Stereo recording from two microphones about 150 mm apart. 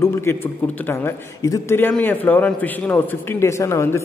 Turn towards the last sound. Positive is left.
turn(degrees=15)  # may be behind; listen again after turning